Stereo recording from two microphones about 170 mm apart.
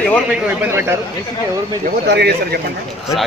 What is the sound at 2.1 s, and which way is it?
Speech, 70° right (ahead or behind).